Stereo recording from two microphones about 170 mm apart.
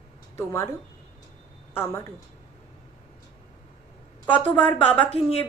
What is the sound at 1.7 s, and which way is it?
Speech, 10° left (ahead or behind).